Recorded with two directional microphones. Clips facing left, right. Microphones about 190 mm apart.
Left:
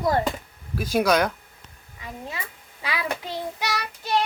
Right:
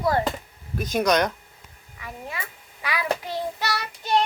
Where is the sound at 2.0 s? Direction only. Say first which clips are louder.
Even; 25° left (ahead or behind).